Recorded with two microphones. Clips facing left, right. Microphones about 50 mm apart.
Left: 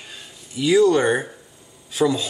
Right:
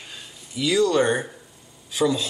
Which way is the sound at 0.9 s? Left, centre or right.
Centre.